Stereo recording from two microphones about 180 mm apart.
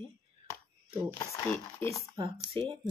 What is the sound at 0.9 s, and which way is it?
Speech, 10° right (ahead or behind).